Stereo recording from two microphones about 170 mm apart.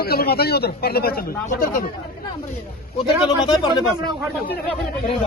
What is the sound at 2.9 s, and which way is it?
Speech, 25° left (ahead or behind).